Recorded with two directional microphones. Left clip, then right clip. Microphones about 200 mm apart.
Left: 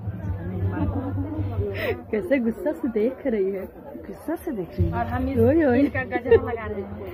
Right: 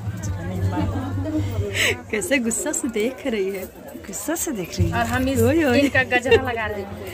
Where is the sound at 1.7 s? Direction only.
15° left (ahead or behind).